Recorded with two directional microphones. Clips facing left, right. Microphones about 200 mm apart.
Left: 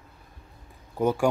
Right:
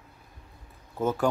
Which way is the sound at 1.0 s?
15° left (ahead or behind).